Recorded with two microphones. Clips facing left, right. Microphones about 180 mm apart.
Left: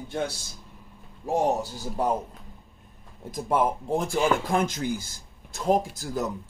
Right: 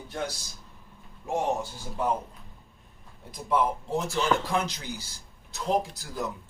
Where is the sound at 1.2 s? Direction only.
40° left (ahead or behind).